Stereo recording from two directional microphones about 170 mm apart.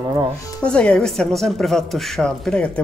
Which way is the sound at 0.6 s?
5° left (ahead or behind).